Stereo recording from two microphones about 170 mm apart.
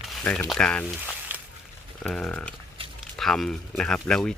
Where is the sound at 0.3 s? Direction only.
5° left (ahead or behind).